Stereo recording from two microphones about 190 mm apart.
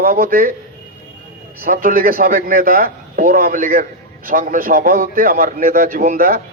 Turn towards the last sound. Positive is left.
turn(degrees=-50)  # may be behind; listen again after turning